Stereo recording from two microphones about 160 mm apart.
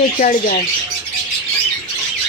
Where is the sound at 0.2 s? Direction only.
55° left (ahead or behind).